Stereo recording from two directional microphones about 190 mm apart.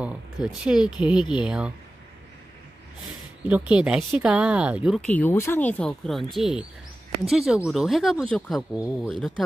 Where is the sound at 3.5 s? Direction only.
5° right (ahead or behind).